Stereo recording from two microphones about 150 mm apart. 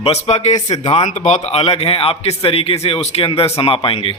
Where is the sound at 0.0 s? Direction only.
45° left (ahead or behind).